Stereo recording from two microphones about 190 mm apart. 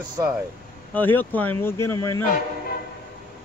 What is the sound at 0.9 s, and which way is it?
Speech, 10° left (ahead or behind).